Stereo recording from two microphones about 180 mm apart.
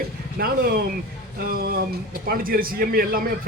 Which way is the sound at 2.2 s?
55° right (ahead or behind).